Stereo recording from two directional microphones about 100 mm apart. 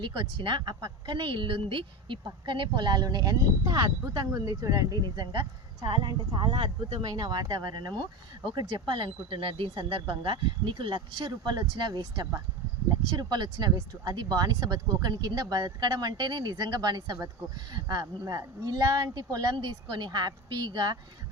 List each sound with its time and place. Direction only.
0.0 s a woman's voice: 55° right (ahead or behind)
7.2 s speech: 40° right (ahead or behind)
8.5 s a woman's voice: 60° right (ahead or behind)